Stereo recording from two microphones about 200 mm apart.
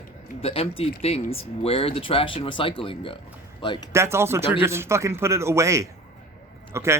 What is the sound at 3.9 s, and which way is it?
Speech, 15° right (ahead or behind).